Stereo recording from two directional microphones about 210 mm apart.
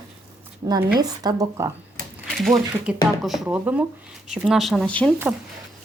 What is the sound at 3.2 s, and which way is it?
Speech, centre (ahead or behind).